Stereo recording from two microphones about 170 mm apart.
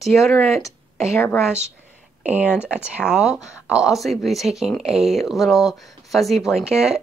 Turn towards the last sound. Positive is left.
turn(degrees=-5)  # may be behind; listen again after turning